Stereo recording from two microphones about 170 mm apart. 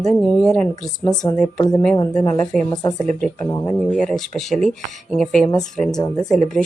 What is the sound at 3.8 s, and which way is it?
A woman's voice, 5° left (ahead or behind).